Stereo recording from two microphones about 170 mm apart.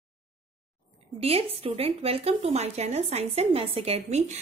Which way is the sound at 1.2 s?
35° right (ahead or behind).